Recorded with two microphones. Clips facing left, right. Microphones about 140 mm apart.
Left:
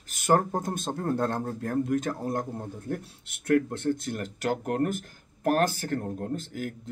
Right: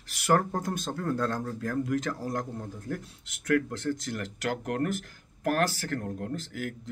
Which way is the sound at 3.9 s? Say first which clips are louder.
Left 3 dB; 50° left (ahead or behind).